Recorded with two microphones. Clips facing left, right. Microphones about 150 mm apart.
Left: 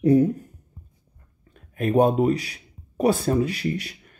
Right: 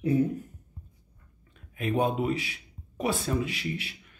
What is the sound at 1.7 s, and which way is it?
Speech, 45° left (ahead or behind).